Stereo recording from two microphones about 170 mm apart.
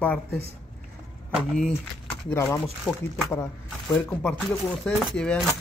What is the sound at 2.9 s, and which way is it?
A man's voice, centre (ahead or behind).